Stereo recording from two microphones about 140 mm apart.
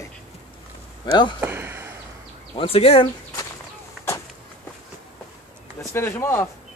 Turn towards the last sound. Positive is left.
turn(degrees=15)  # may be behind; listen again after turning